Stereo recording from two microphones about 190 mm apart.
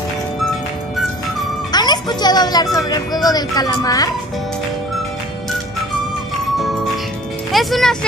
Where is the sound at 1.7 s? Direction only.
20° left (ahead or behind).